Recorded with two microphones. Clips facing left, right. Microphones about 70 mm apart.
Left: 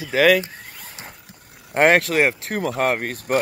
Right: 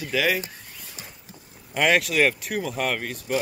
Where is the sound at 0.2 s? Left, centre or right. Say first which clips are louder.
Left 10 dB; left.